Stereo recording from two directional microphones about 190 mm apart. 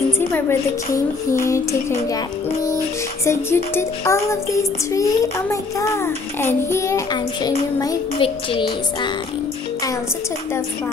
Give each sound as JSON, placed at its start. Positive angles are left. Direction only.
{"t": 0.2, "sound": "a child's voice", "side_deg": 10}
{"t": 3.3, "sound": "a child's voice", "side_deg": 10}